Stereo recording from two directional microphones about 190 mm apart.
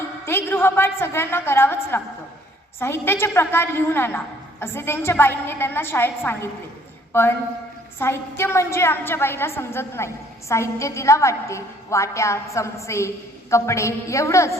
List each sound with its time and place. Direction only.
0.3 s a woman's voice: 10° left (ahead or behind)